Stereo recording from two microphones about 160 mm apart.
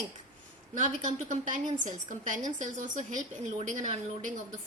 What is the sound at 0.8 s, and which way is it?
A woman's voice, 50° right (ahead or behind).